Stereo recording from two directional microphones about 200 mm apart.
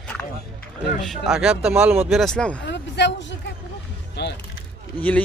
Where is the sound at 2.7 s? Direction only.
60° left (ahead or behind).